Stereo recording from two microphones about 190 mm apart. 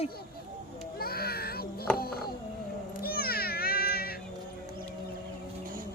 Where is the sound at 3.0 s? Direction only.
55° left (ahead or behind).